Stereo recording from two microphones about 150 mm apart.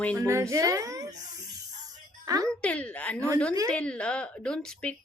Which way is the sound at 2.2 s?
25° right (ahead or behind).